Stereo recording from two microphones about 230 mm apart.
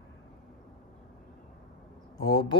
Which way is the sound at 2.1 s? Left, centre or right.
Left.